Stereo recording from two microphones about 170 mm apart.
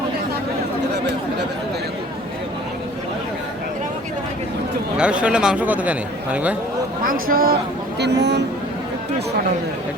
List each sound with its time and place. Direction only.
4.9 s a man's voice: 5° right (ahead or behind)
7.1 s speech: 60° right (ahead or behind)
7.9 s speech: 85° right